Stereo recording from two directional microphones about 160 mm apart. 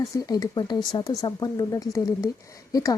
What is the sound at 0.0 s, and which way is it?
Speech, 20° left (ahead or behind).